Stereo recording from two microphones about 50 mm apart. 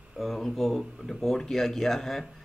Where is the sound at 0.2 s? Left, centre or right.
Centre.